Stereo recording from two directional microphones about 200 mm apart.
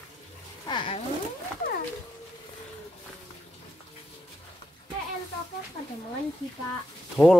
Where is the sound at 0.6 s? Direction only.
25° left (ahead or behind).